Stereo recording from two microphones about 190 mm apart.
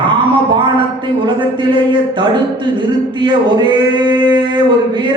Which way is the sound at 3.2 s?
25° right (ahead or behind).